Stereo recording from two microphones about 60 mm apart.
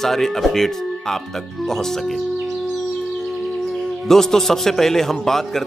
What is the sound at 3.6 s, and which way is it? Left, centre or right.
A man's voice, centre.